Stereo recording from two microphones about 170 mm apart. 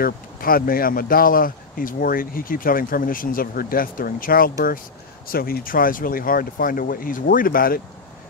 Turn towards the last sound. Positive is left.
turn(degrees=55)  # may be behind; listen again after turning